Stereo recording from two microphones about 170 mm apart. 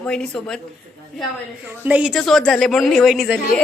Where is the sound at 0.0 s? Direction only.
5° left (ahead or behind).